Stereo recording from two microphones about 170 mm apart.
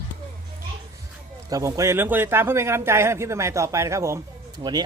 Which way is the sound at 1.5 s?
20° right (ahead or behind).